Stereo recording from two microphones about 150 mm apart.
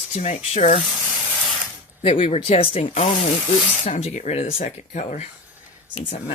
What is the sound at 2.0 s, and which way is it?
Speech, 45° left (ahead or behind).